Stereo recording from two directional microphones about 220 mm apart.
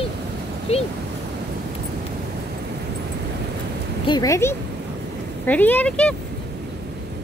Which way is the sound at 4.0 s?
20° left (ahead or behind).